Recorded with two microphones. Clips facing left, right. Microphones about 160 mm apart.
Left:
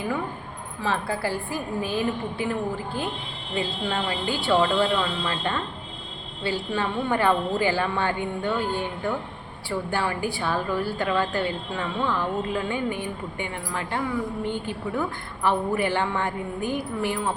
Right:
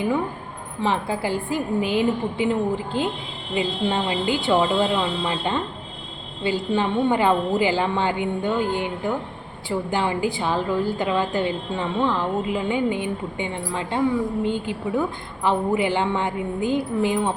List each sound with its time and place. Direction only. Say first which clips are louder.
0.8 s a woman's voice: right 3 dB; 20° right (ahead or behind)